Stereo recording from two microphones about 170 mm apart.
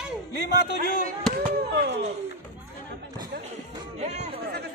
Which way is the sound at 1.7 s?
90° right.